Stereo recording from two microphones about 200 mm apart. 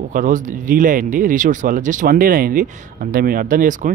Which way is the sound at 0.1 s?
40° right (ahead or behind).